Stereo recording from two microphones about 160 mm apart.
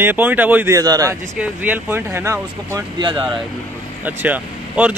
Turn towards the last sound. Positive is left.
turn(degrees=-10)  # may be behind; listen again after turning